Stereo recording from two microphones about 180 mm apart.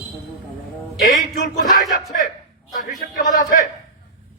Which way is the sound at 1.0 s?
50° left (ahead or behind).